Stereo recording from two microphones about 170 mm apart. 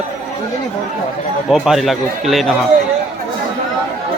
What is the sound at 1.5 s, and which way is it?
A man's voice, centre (ahead or behind).